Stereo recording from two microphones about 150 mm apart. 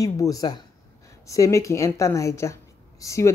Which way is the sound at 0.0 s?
20° left (ahead or behind).